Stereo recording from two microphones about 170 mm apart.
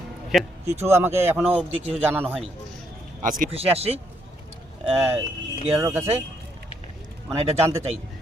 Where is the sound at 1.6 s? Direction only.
40° right (ahead or behind).